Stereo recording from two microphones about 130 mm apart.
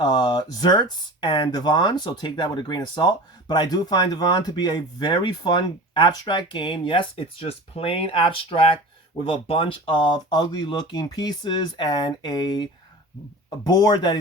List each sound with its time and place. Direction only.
0.0 s speech: 35° left (ahead or behind)
13.7 s speech: 35° left (ahead or behind)